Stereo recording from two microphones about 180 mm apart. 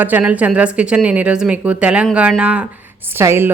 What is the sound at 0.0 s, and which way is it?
A woman's voice, 10° right (ahead or behind).